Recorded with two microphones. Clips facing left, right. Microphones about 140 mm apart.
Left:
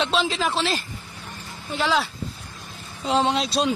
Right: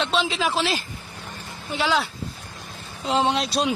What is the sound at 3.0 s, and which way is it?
Speech, 5° right (ahead or behind).